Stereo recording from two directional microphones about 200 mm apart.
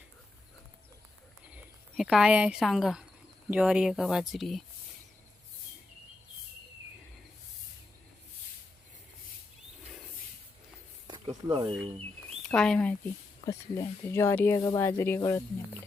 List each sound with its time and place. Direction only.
1.5 s speech: centre (ahead or behind)
11.1 s snake: 20° right (ahead or behind)
12.5 s speech: 5° left (ahead or behind)